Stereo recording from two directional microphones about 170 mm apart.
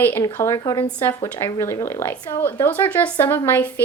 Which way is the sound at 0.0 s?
15° left (ahead or behind).